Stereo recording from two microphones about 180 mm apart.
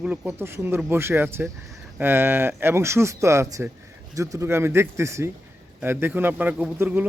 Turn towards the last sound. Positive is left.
turn(degrees=-10)  # may be behind; listen again after turning